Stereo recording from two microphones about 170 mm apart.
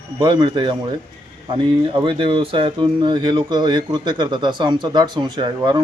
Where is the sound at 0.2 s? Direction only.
30° right (ahead or behind).